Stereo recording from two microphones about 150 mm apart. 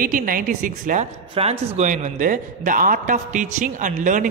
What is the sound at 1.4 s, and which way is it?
A man's voice, 45° right (ahead or behind).